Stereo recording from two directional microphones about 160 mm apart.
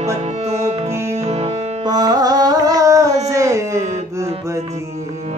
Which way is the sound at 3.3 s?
20° right (ahead or behind).